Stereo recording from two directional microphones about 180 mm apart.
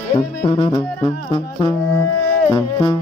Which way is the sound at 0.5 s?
30° left (ahead or behind).